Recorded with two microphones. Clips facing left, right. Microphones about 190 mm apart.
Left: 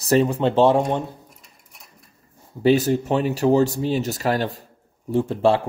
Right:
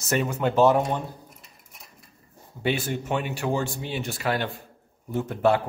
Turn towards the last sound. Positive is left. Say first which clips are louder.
# left 4 dB
turn(degrees=30)  # may be behind; listen again after turning